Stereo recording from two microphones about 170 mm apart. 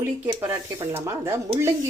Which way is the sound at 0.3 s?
20° right (ahead or behind).